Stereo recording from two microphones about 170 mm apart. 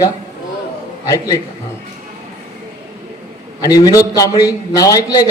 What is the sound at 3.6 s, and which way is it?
A man's voice, 20° left (ahead or behind).